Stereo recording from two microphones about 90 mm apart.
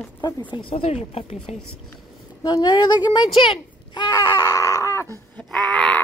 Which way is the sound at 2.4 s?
50° left (ahead or behind).